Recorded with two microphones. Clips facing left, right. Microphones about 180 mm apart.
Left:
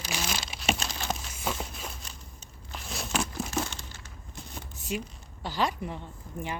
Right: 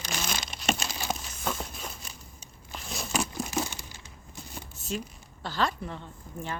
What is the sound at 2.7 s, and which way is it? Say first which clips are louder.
Tearing: even; centre (ahead or behind).